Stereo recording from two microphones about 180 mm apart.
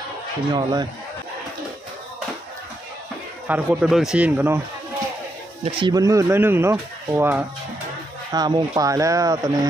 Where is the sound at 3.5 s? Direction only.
5° right (ahead or behind).